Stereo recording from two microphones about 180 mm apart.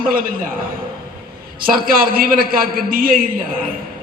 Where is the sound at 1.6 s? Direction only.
55° right (ahead or behind).